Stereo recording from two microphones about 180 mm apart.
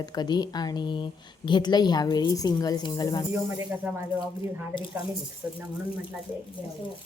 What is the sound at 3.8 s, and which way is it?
Speech, 5° right (ahead or behind).